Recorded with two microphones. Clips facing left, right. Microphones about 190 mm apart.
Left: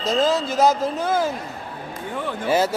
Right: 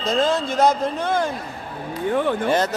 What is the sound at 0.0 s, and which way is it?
A man's voice, centre (ahead or behind).